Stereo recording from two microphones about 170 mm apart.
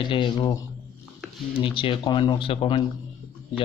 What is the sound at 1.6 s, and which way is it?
Speech, 30° left (ahead or behind).